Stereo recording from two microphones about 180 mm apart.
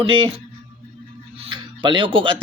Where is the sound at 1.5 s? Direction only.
25° right (ahead or behind).